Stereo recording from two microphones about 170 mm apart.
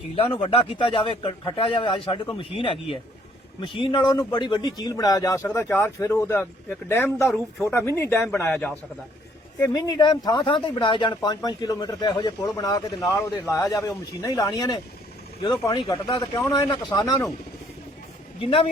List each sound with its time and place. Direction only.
0.2 s a man's voice: 30° left (ahead or behind); by 8.7 s 10° left (ahead or behind)
9.6 s speech: 20° left (ahead or behind)